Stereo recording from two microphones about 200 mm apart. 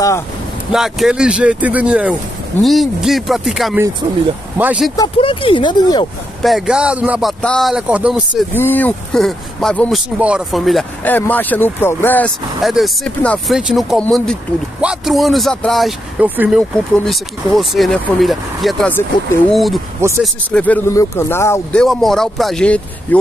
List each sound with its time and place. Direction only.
0.7 s speech: centre (ahead or behind)
4.9 s speech: 25° left (ahead or behind)
6.4 s speech: centre (ahead or behind)
8.5 s speech: 10° left (ahead or behind)
20.0 s speech: 15° right (ahead or behind)
20.5 s speech: 10° left (ahead or behind)
21.8 s speech: centre (ahead or behind)